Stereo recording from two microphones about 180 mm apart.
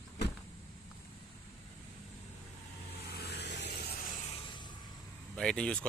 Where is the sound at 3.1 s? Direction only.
65° left (ahead or behind).